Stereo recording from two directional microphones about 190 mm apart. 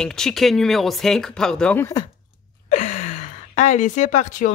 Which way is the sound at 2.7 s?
40° left (ahead or behind).